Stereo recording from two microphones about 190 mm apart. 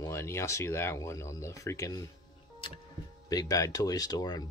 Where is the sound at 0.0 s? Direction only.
15° left (ahead or behind).